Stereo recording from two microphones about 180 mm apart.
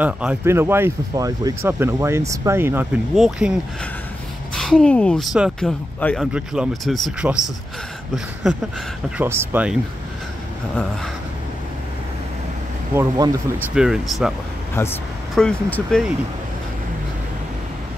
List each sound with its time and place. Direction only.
0.0 s speech: 10° right (ahead or behind)
4.6 s speech: 5° left (ahead or behind)
9.2 s speech: 10° right (ahead or behind)
12.9 s speech: 15° right (ahead or behind)
13.7 s speech: 5° right (ahead or behind)
14.8 s speech: 15° left (ahead or behind)
15.3 s speech: 5° left (ahead or behind)